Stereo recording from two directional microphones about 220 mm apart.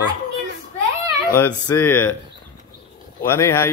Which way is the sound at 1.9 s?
90° left.